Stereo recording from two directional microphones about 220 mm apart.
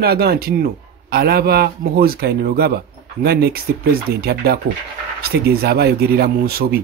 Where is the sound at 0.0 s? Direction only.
45° right (ahead or behind).